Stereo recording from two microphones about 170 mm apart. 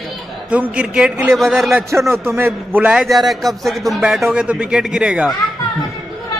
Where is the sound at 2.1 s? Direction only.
15° right (ahead or behind).